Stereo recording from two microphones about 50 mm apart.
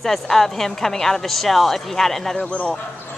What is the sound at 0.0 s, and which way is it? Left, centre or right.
A woman's voice, centre.